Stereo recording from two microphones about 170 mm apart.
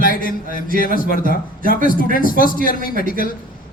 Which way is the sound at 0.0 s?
55° left (ahead or behind).